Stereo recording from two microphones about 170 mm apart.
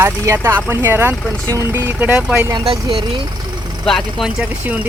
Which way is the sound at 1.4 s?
15° right (ahead or behind).